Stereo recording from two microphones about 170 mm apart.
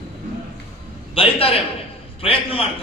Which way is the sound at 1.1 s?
35° left (ahead or behind).